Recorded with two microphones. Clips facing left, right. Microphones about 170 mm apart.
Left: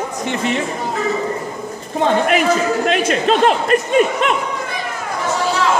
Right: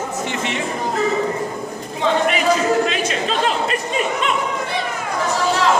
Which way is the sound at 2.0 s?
50° left (ahead or behind).